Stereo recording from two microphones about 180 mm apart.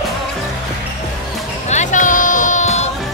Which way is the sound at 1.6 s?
40° left (ahead or behind).